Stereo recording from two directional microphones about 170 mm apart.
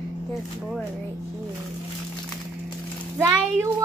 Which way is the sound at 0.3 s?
Centre (ahead or behind).